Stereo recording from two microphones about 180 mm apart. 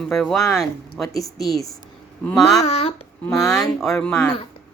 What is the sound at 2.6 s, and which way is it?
Speech, 35° left (ahead or behind).